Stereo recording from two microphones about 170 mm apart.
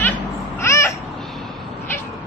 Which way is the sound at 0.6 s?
15° left (ahead or behind).